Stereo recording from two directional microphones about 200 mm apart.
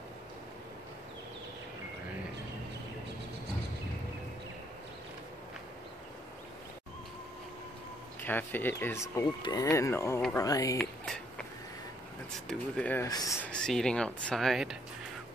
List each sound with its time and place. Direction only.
8.2 s speech: 10° left (ahead or behind)
12.4 s speech: 5° left (ahead or behind)